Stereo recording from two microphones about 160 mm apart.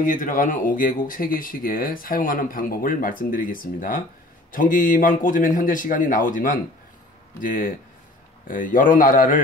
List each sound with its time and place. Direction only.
0.0 s speech: 55° left (ahead or behind)